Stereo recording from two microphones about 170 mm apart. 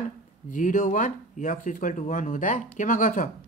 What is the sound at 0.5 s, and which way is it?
Speech, 50° left (ahead or behind).